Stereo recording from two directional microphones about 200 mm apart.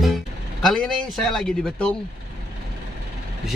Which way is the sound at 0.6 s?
Centre (ahead or behind).